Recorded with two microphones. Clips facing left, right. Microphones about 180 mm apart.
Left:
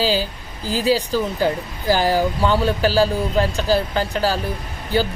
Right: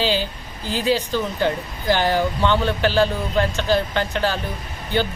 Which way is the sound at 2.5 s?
40° left (ahead or behind).